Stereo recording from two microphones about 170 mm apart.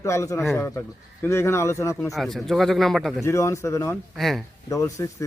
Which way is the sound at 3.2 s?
15° left (ahead or behind).